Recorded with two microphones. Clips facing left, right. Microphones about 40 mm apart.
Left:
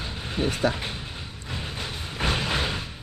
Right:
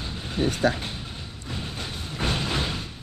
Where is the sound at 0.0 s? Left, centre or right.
Centre.